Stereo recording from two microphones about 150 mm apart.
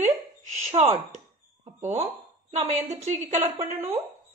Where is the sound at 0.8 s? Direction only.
35° right (ahead or behind).